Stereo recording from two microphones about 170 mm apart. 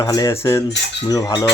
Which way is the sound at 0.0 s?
20° left (ahead or behind).